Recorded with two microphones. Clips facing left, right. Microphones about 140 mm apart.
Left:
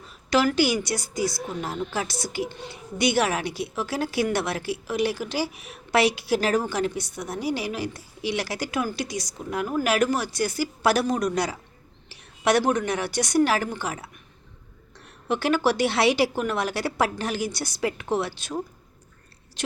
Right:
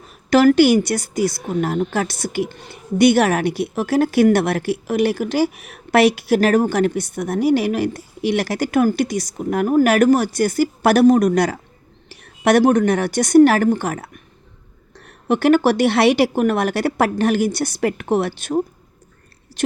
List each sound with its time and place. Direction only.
0.1 s a woman's voice: 55° right (ahead or behind)